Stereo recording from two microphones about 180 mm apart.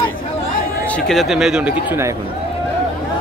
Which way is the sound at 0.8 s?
5° left (ahead or behind).